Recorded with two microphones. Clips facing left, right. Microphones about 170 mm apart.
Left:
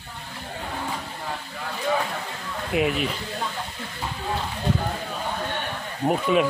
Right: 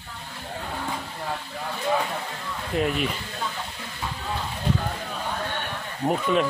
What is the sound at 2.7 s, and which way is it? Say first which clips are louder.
Speech: left 1 dB; 5° left (ahead or behind).